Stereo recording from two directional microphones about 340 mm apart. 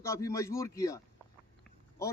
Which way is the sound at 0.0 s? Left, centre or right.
Centre.